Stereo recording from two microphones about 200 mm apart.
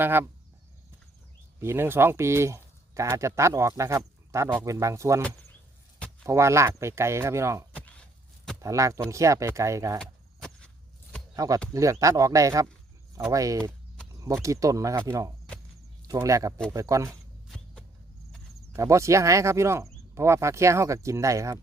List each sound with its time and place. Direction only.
0.0 s speech: 10° right (ahead or behind)
1.5 s speech: 10° right (ahead or behind)
6.2 s speech: 15° right (ahead or behind)
7.7 s a sound: 5° left (ahead or behind)
8.6 s speech: 15° right (ahead or behind)
10.0 s vehicle: 5° left (ahead or behind)
11.3 s speech: 15° right (ahead or behind)
13.6 s a sound: 5° left (ahead or behind)
14.1 s speech: 15° right (ahead or behind)
16.0 s speech: 15° right (ahead or behind)
18.8 s speech: 15° right (ahead or behind)